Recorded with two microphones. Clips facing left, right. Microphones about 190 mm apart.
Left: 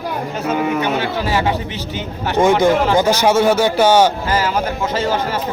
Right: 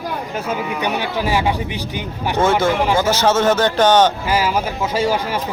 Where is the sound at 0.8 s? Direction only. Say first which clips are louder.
Left 2 dB; 15° right (ahead or behind).